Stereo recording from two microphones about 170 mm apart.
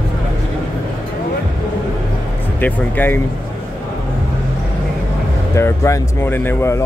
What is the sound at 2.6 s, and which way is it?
Speech, 10° left (ahead or behind).